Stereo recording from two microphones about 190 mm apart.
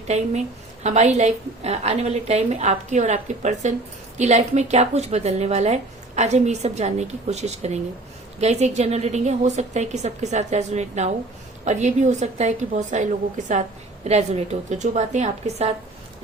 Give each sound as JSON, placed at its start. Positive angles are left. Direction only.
{"t": 0.1, "sound": "a woman's voice", "side_deg": -35}